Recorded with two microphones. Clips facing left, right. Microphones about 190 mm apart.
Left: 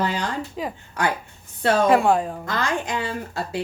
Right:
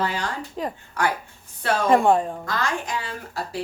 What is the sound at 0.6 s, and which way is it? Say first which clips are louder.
Speech: right 3 dB; 5° left (ahead or behind).